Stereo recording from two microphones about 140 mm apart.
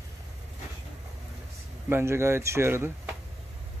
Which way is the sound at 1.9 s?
20° right (ahead or behind).